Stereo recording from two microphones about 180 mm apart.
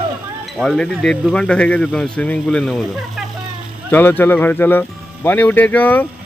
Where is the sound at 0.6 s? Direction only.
5° left (ahead or behind).